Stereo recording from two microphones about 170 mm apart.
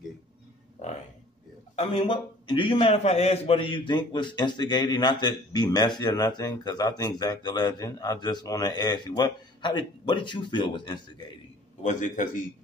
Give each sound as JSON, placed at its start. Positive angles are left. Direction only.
{"t": 1.8, "sound": "a man's voice", "side_deg": 30}
{"t": 11.8, "sound": "a man's voice", "side_deg": 50}